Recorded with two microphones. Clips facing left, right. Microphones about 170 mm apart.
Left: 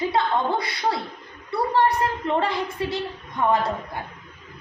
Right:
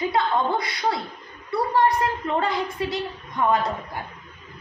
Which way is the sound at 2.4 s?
25° left (ahead or behind).